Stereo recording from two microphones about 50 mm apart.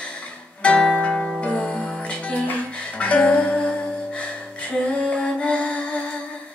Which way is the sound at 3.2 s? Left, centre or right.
Left.